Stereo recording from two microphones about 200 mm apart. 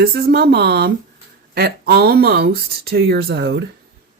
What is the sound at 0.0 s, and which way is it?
Speech, 50° right (ahead or behind).